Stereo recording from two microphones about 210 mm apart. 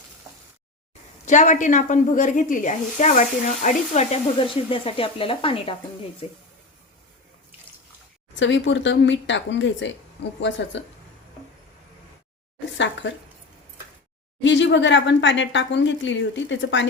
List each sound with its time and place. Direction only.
1.2 s speech: 35° left (ahead or behind)
8.4 s speech: 60° left (ahead or behind)
12.7 s speech: 60° left (ahead or behind)
14.4 s speech: 60° left (ahead or behind)